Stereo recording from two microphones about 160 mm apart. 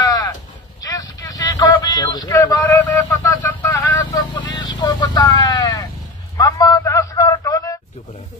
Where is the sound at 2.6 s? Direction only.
10° left (ahead or behind).